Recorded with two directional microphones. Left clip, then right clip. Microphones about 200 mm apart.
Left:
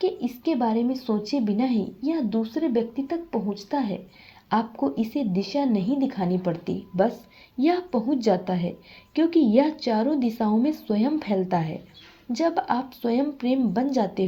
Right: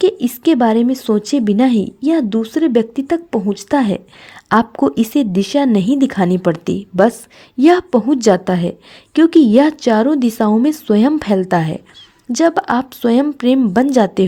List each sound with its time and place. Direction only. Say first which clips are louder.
0.0 s speech: right 12 dB; 50° right (ahead or behind)